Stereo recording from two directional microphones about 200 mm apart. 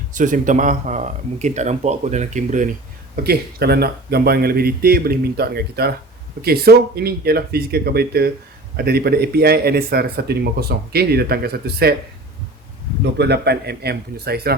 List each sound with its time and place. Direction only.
0.1 s speech: 40° right (ahead or behind)
3.2 s speech: 50° right (ahead or behind)
13.1 s speech: 55° right (ahead or behind)